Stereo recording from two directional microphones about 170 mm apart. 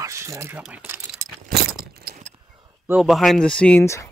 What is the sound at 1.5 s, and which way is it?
Vehicle, 65° right (ahead or behind).